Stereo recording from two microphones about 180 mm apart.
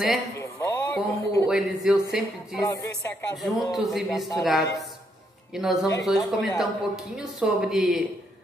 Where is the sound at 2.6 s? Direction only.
15° left (ahead or behind).